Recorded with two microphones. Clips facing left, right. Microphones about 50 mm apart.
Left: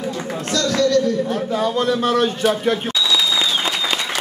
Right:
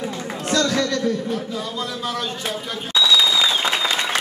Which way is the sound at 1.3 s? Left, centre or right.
Left.